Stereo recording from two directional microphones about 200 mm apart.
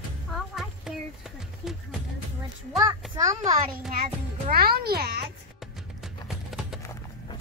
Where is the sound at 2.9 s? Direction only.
15° right (ahead or behind).